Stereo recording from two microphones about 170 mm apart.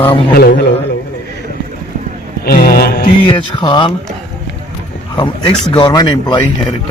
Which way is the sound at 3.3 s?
30° left (ahead or behind).